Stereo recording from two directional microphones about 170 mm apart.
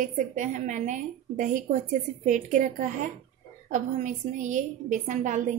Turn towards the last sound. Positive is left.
turn(degrees=-50)  # may be behind; listen again after turning